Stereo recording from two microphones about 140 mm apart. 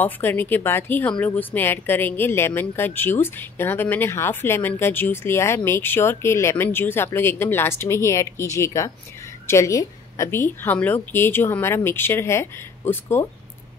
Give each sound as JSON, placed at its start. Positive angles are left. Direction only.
{"t": 0.0, "sound": "a woman's voice", "side_deg": 15}